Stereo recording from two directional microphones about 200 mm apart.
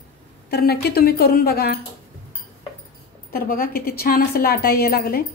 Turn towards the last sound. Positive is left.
turn(degrees=50)  # may be behind; listen again after turning